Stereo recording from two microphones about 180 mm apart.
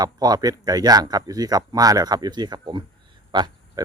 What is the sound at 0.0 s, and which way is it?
Speech, 20° right (ahead or behind).